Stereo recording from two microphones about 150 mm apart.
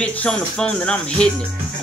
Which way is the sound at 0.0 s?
5° left (ahead or behind).